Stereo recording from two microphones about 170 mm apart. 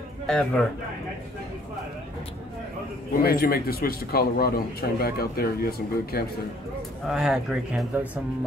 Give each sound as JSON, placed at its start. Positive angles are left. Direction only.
{"t": 0.3, "sound": "speech", "side_deg": 5}
{"t": 3.2, "sound": "a man's voice", "side_deg": 60}
{"t": 7.1, "sound": "speech", "side_deg": -5}